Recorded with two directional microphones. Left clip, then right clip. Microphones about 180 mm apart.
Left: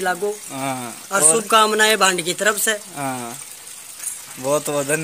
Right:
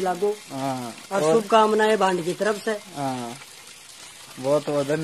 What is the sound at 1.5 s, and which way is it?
Speech, 15° right (ahead or behind).